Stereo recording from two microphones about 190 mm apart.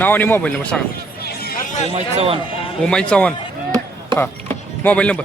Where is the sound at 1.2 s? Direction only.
55° left (ahead or behind).